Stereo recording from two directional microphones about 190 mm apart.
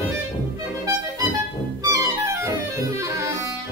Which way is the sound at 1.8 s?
15° right (ahead or behind).